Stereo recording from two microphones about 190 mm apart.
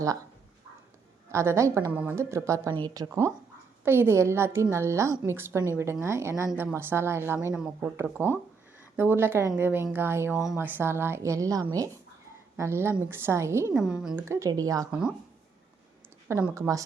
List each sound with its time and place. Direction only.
1.3 s a woman's voice: 15° right (ahead or behind)
13.8 s a woman's voice: 5° right (ahead or behind)
14.3 s a woman's voice: 15° right (ahead or behind)
16.3 s a woman's voice: 15° right (ahead or behind)